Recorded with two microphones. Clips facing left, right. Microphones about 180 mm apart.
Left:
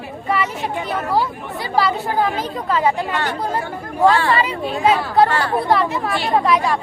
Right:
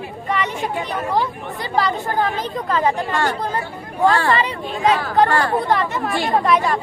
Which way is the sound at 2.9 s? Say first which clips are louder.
Right 1 dB; 45° right (ahead or behind).